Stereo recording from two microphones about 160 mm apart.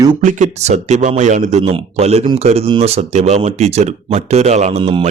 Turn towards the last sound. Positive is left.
turn(degrees=-40)  # may be behind; listen again after turning